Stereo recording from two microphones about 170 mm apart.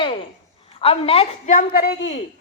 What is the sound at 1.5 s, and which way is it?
Speech, 55° left (ahead or behind).